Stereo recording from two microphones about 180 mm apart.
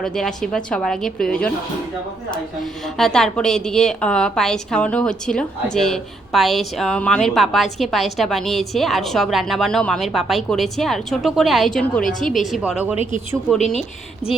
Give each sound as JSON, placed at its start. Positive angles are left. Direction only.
{"t": 0.0, "sound": "a woman's voice", "side_deg": 5}
{"t": 14.2, "sound": "speech", "side_deg": 35}